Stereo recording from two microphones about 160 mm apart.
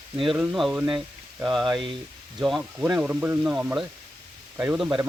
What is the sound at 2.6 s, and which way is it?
Speech, 15° right (ahead or behind).